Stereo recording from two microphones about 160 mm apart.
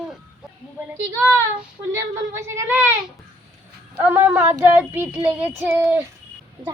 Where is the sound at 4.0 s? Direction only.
10° right (ahead or behind).